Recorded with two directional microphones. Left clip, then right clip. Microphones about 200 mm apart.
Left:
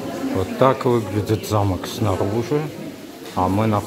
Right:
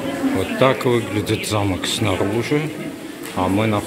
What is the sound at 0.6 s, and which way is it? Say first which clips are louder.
Speech: even; 15° left (ahead or behind).